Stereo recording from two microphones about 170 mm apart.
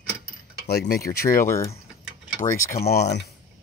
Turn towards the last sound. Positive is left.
turn(degrees=75)  # may be behind; listen again after turning